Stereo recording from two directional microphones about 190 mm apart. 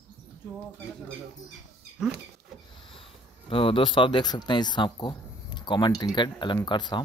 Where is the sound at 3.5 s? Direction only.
30° left (ahead or behind).